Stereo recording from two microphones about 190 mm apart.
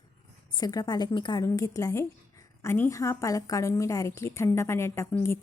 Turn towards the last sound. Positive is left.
turn(degrees=15)  # may be behind; listen again after turning